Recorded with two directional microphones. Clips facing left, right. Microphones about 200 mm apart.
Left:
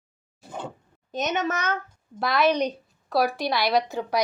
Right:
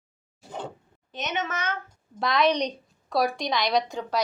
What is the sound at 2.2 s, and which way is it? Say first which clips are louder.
A woman's voice: left 1 dB; 5° left (ahead or behind).